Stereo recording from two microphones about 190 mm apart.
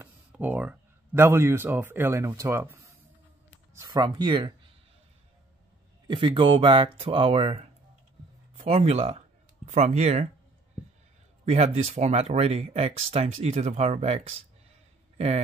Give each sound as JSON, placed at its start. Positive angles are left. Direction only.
{"t": 0.0, "sound": "speech", "side_deg": -10}
{"t": 6.0, "sound": "speech", "side_deg": -25}
{"t": 11.4, "sound": "speech", "side_deg": -35}